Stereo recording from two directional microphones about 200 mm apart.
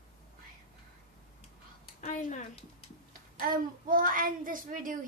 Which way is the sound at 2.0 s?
40° left (ahead or behind).